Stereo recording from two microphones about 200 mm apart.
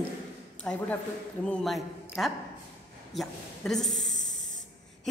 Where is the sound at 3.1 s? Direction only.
Centre (ahead or behind).